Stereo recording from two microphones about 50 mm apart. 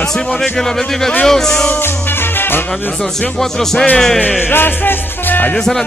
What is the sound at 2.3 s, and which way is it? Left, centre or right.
Music, left.